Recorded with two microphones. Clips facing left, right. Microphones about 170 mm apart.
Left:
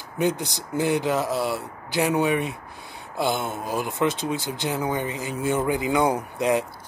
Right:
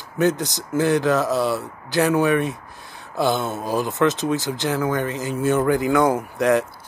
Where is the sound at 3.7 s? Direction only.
10° left (ahead or behind).